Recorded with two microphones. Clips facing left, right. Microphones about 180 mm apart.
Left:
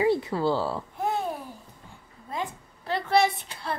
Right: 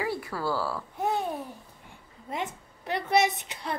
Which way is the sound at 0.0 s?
20° left (ahead or behind).